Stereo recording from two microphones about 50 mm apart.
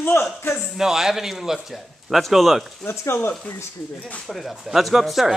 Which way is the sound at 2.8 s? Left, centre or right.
Left.